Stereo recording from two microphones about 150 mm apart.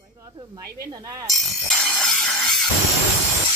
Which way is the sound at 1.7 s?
5° left (ahead or behind).